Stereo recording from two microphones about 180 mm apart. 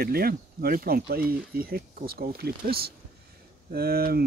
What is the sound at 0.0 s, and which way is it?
Speech, 55° right (ahead or behind).